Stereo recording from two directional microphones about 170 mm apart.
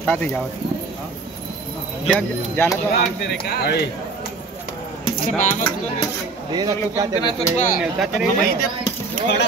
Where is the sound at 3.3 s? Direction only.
70° left (ahead or behind).